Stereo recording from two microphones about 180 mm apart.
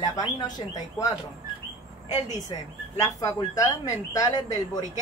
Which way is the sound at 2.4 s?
20° left (ahead or behind).